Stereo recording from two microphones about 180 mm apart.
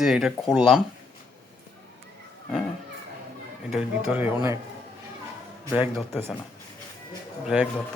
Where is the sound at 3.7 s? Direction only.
5° right (ahead or behind).